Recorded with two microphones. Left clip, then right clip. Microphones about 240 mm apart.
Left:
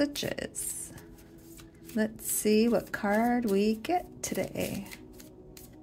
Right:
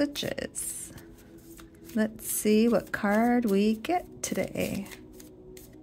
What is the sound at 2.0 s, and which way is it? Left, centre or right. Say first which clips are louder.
Speech: right 1 dB; centre.